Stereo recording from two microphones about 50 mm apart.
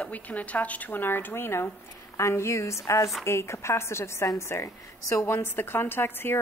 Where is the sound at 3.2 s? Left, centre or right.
Left.